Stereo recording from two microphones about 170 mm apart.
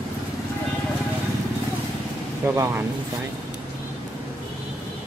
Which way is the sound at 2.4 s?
15° right (ahead or behind).